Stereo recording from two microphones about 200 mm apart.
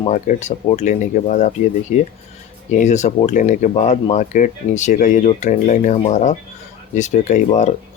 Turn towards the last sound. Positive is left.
turn(degrees=35)  # may be behind; listen again after turning